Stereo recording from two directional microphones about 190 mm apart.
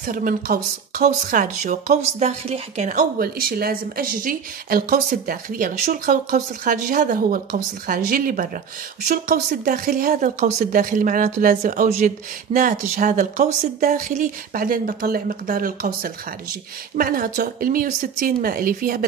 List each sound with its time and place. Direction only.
0.0 s speech: 45° right (ahead or behind)